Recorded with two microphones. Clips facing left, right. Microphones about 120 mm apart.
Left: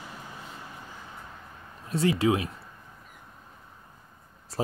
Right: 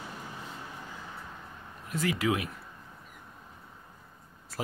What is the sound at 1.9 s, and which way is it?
Speech, 30° left (ahead or behind).